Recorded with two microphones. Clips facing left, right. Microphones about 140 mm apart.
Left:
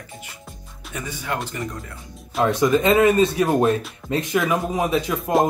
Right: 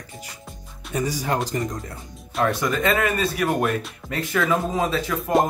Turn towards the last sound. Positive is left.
turn(degrees=20)  # may be behind; listen again after turning